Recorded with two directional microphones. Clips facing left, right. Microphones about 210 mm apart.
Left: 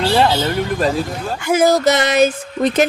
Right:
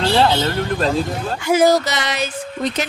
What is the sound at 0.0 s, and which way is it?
Speech, 5° left (ahead or behind).